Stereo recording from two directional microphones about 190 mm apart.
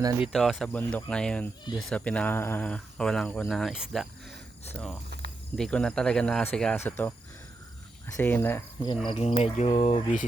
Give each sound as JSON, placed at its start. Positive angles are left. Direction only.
{"t": 0.2, "sound": "speech", "side_deg": 0}
{"t": 9.0, "sound": "cricket", "side_deg": 35}